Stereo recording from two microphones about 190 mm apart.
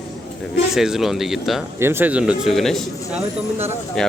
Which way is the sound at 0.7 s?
Centre (ahead or behind).